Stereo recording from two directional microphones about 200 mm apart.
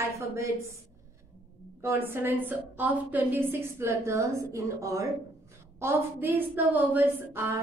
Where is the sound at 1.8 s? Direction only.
10° right (ahead or behind).